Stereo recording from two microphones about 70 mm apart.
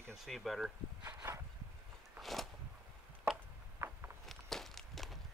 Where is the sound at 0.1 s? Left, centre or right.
Centre.